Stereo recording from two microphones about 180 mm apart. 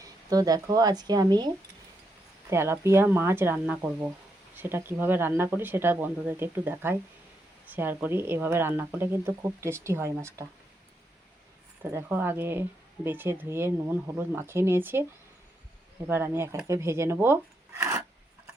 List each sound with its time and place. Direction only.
0.0 s a woman's voice: 20° right (ahead or behind)
2.5 s speech: 15° right (ahead or behind)
11.8 s speech: 10° right (ahead or behind)
16.0 s speech: 10° right (ahead or behind)